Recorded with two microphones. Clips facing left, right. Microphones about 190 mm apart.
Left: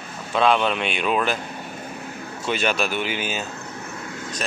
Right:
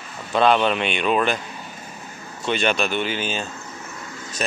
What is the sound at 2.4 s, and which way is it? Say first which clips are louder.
Speech: right 2 dB; 5° left (ahead or behind).